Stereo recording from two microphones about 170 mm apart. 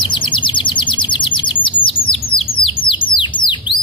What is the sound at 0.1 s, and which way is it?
Bird, 30° left (ahead or behind).